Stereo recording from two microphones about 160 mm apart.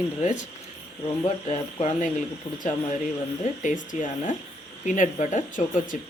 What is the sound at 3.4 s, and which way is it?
Speech, 50° left (ahead or behind).